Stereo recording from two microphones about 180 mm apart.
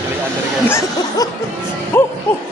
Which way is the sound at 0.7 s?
15° left (ahead or behind).